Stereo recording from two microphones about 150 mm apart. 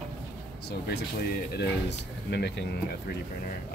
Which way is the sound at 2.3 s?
90° left.